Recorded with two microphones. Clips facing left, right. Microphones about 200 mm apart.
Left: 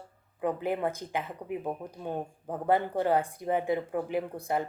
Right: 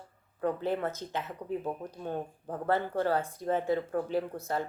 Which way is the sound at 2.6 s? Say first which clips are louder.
Left 2 dB; 15° left (ahead or behind).